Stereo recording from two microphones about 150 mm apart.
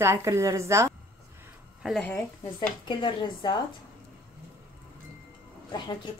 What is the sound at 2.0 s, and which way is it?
Speech, 10° left (ahead or behind).